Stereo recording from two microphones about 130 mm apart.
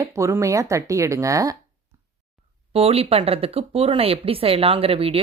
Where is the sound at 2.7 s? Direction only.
50° right (ahead or behind).